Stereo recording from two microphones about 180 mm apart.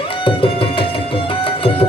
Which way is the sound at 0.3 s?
30° left (ahead or behind).